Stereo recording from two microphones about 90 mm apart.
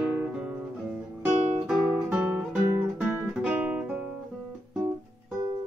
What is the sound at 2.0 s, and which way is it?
Guitar, 10° right (ahead or behind).